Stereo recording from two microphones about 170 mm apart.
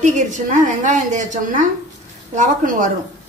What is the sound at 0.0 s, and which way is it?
A woman's voice, 45° right (ahead or behind).